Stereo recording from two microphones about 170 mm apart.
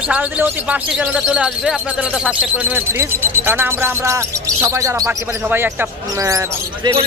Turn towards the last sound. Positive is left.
turn(degrees=-20)  # may be behind; listen again after turning